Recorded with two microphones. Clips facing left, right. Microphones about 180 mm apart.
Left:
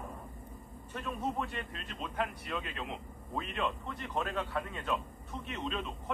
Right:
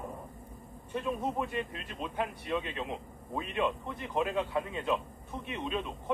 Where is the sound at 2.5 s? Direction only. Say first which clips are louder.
Right 5 dB; 25° right (ahead or behind).